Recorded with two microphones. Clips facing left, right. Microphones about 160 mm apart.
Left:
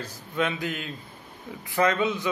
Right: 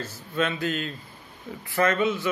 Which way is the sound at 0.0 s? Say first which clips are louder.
Right 1 dB; 15° left (ahead or behind).